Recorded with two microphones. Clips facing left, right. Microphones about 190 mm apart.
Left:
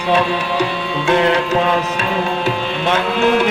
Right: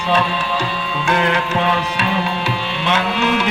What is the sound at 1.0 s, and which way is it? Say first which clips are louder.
Music: left 4 dB; 25° left (ahead or behind).